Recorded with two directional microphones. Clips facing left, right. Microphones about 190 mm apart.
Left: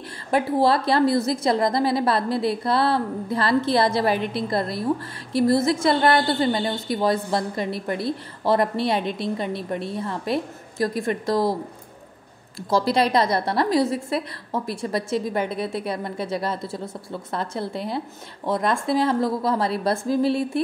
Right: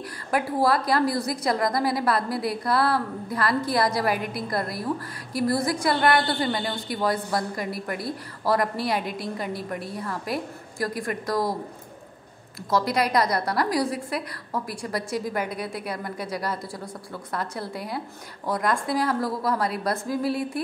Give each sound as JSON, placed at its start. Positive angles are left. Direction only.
{"t": 0.3, "sound": "a woman's voice", "side_deg": 25}
{"t": 12.5, "sound": "a woman's voice", "side_deg": 30}